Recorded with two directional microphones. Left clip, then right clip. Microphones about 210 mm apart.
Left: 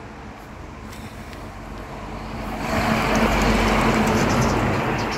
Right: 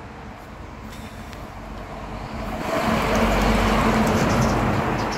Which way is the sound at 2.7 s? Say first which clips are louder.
Left 1 dB; 45° right (ahead or behind).